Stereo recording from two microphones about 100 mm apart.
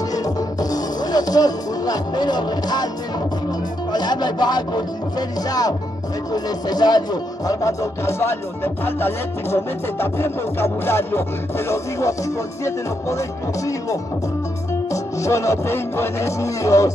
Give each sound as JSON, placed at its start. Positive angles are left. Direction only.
{"t": 0.1, "sound": "music", "side_deg": 40}
{"t": 3.9, "sound": "speech", "side_deg": 45}
{"t": 14.9, "sound": "speech", "side_deg": 30}